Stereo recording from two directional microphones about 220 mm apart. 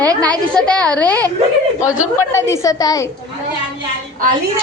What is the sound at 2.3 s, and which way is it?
Speech, 10° left (ahead or behind).